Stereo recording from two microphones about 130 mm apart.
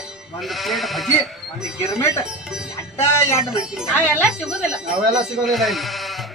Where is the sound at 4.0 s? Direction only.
10° right (ahead or behind).